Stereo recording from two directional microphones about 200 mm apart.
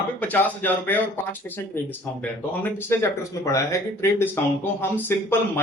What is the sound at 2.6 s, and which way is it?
Speech, 15° left (ahead or behind).